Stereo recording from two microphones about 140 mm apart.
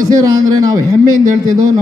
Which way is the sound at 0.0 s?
25° right (ahead or behind).